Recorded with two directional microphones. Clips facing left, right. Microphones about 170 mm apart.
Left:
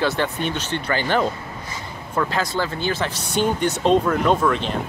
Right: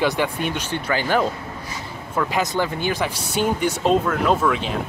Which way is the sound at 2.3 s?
15° right (ahead or behind).